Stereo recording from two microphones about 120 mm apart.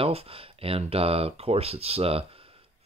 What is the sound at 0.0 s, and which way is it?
Speech, 55° right (ahead or behind).